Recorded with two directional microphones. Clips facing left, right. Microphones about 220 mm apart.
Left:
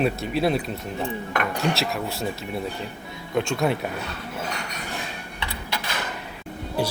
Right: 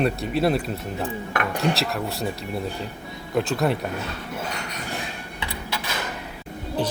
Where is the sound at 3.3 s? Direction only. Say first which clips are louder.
Right 1 dB; centre (ahead or behind).